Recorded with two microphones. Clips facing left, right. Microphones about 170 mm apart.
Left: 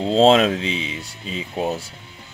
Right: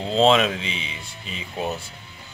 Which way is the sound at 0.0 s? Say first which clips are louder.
Left 4 dB; 35° left (ahead or behind).